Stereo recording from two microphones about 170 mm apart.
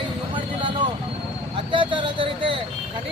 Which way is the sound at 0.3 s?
30° right (ahead or behind).